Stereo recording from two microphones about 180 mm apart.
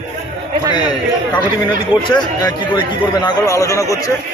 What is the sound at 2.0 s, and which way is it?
Speech, 25° left (ahead or behind).